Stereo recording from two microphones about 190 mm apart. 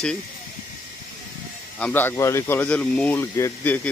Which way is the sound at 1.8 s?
10° left (ahead or behind).